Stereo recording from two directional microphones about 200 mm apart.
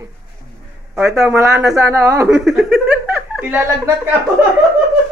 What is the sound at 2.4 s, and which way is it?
Chuckle, centre (ahead or behind).